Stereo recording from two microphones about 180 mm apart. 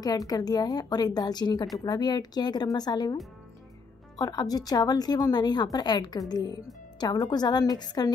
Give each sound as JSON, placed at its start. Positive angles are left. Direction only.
{"t": 0.0, "sound": "a woman's voice", "side_deg": 20}
{"t": 4.2, "sound": "a woman's voice", "side_deg": 20}